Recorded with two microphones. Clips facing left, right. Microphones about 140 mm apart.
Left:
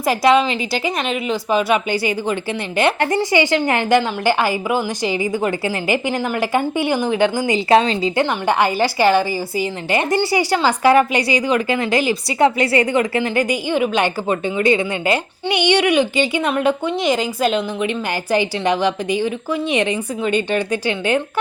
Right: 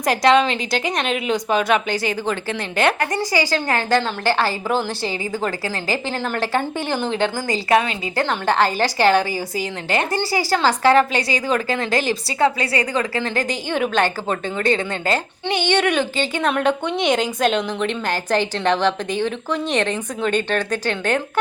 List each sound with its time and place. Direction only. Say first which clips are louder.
0.0 s a woman's voice: left 1 dB; 5° left (ahead or behind)
3.0 s a woman's voice: left 4 dB; 25° left (ahead or behind)
8.2 s a woman's voice: even; 10° left (ahead or behind)